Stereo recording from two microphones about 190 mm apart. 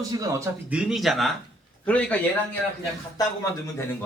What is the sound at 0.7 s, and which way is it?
A man's voice, 5° right (ahead or behind).